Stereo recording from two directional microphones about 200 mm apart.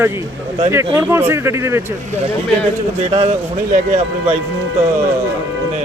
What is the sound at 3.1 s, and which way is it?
A man's voice, 30° right (ahead or behind).